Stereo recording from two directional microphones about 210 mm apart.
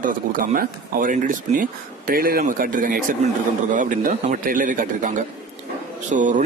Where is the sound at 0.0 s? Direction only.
40° right (ahead or behind).